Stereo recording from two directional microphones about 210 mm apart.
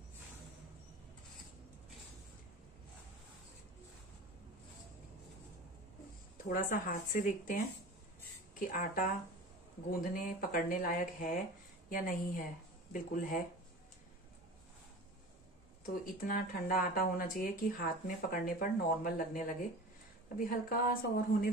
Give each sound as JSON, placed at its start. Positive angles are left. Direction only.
{"t": 6.3, "sound": "speech", "side_deg": 40}
{"t": 8.5, "sound": "speech", "side_deg": 40}
{"t": 15.8, "sound": "speech", "side_deg": 40}